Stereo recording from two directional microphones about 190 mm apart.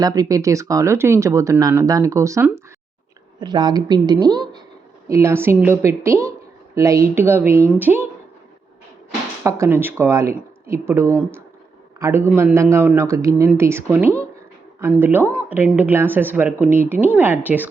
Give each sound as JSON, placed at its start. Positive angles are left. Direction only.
{"t": 0.0, "sound": "a woman's voice", "side_deg": -20}
{"t": 9.4, "sound": "speech", "side_deg": -15}